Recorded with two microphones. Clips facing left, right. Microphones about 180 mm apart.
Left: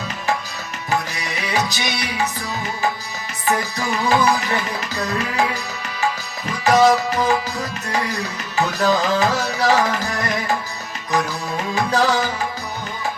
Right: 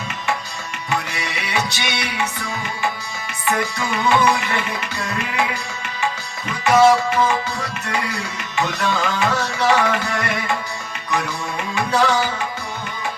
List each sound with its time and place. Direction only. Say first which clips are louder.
0.9 s music: left 1 dB; 35° left (ahead or behind)
3.4 s music: left 1 dB; 35° left (ahead or behind)
6.7 s music: right 1 dB; 35° left (ahead or behind)
11.7 s tabla: even; 35° left (ahead or behind)